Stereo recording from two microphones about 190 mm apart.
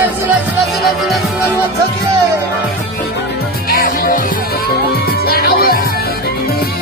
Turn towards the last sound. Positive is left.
turn(degrees=55)  # may be behind; listen again after turning